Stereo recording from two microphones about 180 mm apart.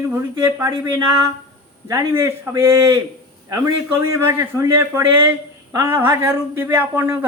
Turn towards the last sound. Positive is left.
turn(degrees=-15)  # may be behind; listen again after turning